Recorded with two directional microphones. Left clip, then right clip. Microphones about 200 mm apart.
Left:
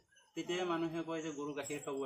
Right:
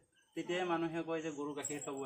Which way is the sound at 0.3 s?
5° left (ahead or behind).